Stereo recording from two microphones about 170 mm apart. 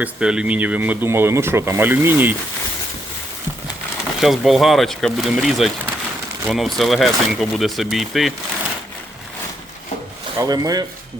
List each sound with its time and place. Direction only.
0.0 s speech: 5° right (ahead or behind)
4.2 s speech: centre (ahead or behind)
10.3 s speech: 20° right (ahead or behind)